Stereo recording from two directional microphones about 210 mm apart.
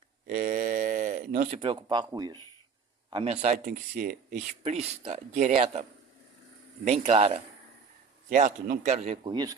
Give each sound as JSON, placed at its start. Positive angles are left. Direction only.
{"t": 0.3, "sound": "a sound", "side_deg": -40}
{"t": 1.5, "sound": "a man's voice", "side_deg": -25}
{"t": 3.4, "sound": "speech", "side_deg": -35}
{"t": 6.8, "sound": "speech", "side_deg": -30}